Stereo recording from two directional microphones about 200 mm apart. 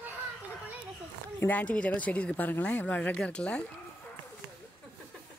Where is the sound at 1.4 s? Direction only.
5° left (ahead or behind).